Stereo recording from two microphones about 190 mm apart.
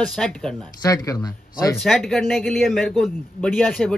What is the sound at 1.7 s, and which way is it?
A man's voice, centre (ahead or behind).